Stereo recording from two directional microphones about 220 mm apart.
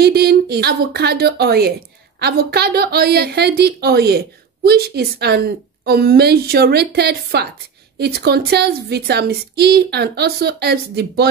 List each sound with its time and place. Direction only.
0.0 s a woman's voice: 45° right (ahead or behind)